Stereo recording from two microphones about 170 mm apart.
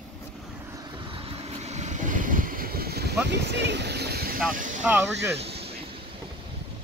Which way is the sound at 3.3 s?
90° right.